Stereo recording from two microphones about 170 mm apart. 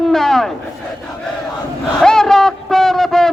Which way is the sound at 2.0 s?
5° left (ahead or behind).